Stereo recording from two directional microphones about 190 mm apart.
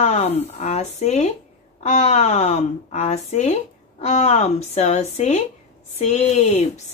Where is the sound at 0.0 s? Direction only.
35° left (ahead or behind).